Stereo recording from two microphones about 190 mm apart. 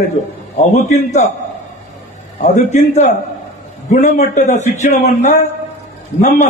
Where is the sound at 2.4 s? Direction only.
40° left (ahead or behind).